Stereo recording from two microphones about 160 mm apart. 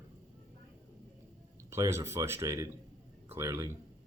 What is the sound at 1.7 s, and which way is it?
Speech, 15° right (ahead or behind).